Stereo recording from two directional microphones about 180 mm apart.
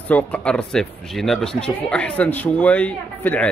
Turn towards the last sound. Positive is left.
turn(degrees=5)  # may be behind; listen again after turning